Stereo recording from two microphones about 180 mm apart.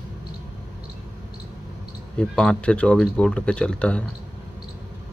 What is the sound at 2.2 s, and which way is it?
Speech, 5° left (ahead or behind).